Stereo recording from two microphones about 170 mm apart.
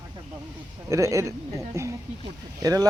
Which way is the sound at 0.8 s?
15° right (ahead or behind).